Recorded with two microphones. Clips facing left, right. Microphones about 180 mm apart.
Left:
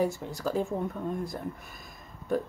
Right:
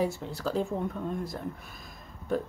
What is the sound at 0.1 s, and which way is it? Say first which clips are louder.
Speech: left 1 dB; 15° left (ahead or behind).